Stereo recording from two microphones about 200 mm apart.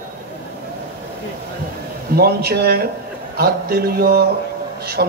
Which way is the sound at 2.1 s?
50° right (ahead or behind).